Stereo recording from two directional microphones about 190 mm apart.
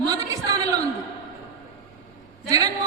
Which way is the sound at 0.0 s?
20° right (ahead or behind).